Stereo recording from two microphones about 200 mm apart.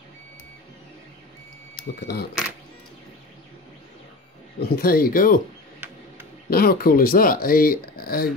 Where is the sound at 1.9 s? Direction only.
55° left (ahead or behind).